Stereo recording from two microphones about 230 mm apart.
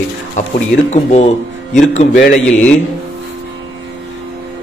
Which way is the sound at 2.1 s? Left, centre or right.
Left.